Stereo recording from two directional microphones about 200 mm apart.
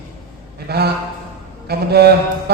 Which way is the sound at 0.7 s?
50° right (ahead or behind).